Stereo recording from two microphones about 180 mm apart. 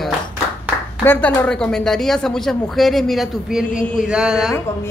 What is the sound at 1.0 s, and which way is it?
Speech, 10° left (ahead or behind).